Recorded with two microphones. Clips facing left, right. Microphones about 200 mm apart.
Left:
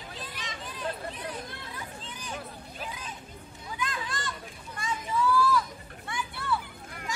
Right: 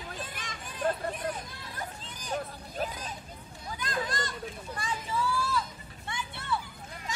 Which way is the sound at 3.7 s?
40° right (ahead or behind).